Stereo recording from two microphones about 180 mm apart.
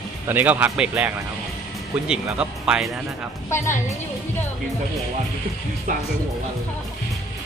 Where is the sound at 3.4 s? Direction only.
15° left (ahead or behind).